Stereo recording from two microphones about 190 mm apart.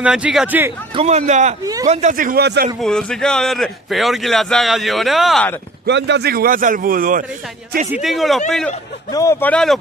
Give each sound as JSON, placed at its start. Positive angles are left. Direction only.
{"t": 0.0, "sound": "a man's voice", "side_deg": -5}
{"t": 0.9, "sound": "a man's voice", "side_deg": -35}
{"t": 2.8, "sound": "a man's voice", "side_deg": 5}
{"t": 5.9, "sound": "a man's voice", "side_deg": -65}
{"t": 7.9, "sound": "a man's voice", "side_deg": 0}
{"t": 9.1, "sound": "speech", "side_deg": 15}